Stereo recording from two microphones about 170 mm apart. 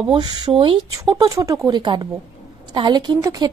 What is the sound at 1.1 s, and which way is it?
A woman's voice, 20° right (ahead or behind).